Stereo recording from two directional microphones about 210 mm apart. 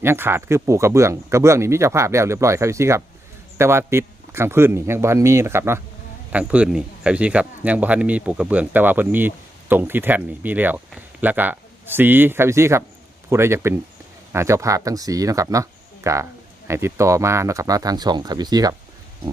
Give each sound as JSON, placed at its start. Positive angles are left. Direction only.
{"t": 0.0, "sound": "speech", "side_deg": -10}